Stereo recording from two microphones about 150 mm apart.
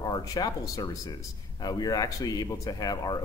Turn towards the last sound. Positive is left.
turn(degrees=25)  # may be behind; listen again after turning